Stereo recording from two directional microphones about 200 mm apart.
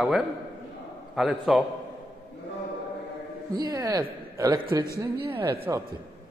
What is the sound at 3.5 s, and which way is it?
A woman's voice, 20° right (ahead or behind).